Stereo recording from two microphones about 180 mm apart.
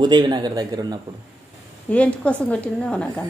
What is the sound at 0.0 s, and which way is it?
Speech, 25° right (ahead or behind).